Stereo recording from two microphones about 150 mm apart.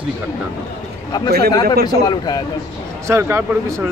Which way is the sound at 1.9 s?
25° left (ahead or behind).